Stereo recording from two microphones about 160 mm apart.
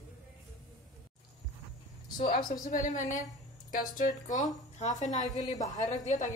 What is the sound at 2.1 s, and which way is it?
A woman's voice, 65° left (ahead or behind).